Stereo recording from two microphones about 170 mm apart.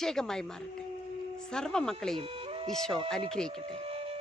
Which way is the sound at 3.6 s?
35° right (ahead or behind).